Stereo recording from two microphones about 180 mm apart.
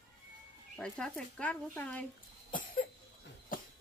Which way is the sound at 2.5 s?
50° left (ahead or behind).